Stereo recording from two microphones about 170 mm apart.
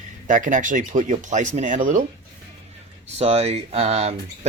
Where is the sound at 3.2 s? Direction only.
40° right (ahead or behind).